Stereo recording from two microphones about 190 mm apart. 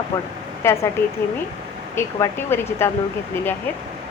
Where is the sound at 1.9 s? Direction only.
15° left (ahead or behind).